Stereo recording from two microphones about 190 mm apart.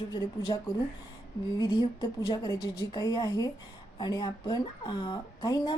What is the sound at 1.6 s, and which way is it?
A woman's voice, 20° left (ahead or behind).